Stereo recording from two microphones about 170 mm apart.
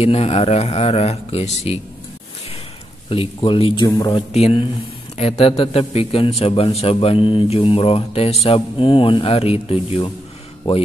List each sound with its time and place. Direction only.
0.0 s a man's voice: 35° left (ahead or behind)
3.1 s speech: 30° left (ahead or behind)
4.3 s a man's voice: 35° left (ahead or behind)